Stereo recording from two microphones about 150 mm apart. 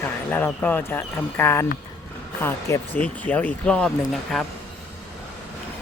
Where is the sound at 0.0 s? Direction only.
15° left (ahead or behind).